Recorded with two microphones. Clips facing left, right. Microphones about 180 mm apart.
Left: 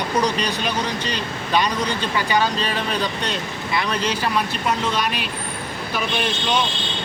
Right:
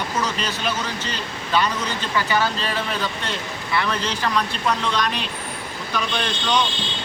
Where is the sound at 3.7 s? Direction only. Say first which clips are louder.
Left 1 dB; 10° left (ahead or behind).